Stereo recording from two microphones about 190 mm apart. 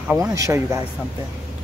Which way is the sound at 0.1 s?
15° right (ahead or behind).